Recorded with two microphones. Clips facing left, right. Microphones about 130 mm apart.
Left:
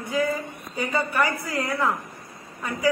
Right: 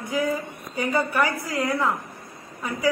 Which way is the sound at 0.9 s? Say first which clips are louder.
Right 1 dB; 15° right (ahead or behind).